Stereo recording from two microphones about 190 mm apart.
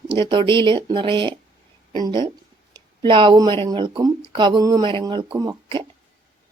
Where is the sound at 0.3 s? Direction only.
25° right (ahead or behind).